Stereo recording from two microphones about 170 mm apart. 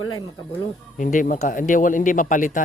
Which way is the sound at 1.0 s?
50° left (ahead or behind).